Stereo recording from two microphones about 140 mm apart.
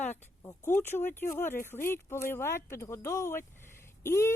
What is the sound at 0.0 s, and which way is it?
Speech, 15° left (ahead or behind).